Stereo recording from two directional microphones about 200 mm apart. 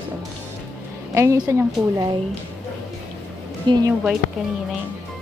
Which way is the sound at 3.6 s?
20° right (ahead or behind).